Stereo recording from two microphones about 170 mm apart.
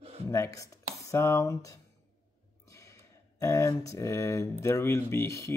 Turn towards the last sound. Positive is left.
turn(degrees=15)  # may be behind; listen again after turning